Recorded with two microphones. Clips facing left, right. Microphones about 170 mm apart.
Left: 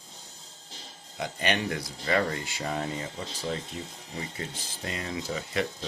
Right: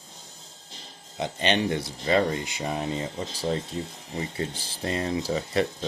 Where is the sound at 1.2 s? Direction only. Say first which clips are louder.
Right 4 dB; 25° right (ahead or behind).